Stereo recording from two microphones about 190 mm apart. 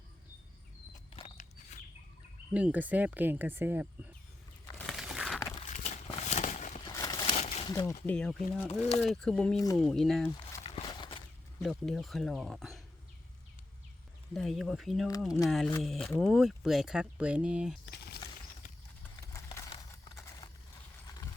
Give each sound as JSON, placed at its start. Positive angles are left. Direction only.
{"t": 1.1, "sound": "a sound", "side_deg": 35}
{"t": 2.5, "sound": "speech", "side_deg": -5}
{"t": 4.9, "sound": "crumpling", "side_deg": 0}
{"t": 5.5, "sound": "a sound", "side_deg": 35}
{"t": 6.8, "sound": "crumpling", "side_deg": 20}
{"t": 7.3, "sound": "crumpling", "side_deg": 35}
{"t": 7.7, "sound": "speech", "side_deg": 20}
{"t": 8.0, "sound": "speech", "side_deg": 5}
{"t": 10.6, "sound": "horse", "side_deg": 30}
{"t": 11.6, "sound": "speech", "side_deg": 0}
{"t": 14.3, "sound": "speech", "side_deg": 0}
{"t": 17.9, "sound": "a sound", "side_deg": 55}
{"t": 19.1, "sound": "clip-clop", "side_deg": 20}